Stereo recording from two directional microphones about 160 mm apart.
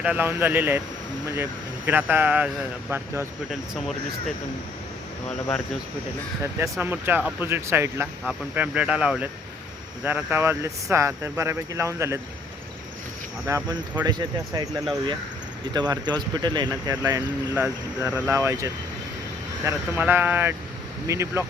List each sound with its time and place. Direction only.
0.0 s speech: 10° right (ahead or behind)
1.9 s speech: 10° right (ahead or behind)
6.4 s speech: 15° right (ahead or behind)
13.7 s speech: 25° right (ahead or behind)